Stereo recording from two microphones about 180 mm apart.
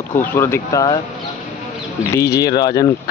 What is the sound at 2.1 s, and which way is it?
Speech, 20° left (ahead or behind).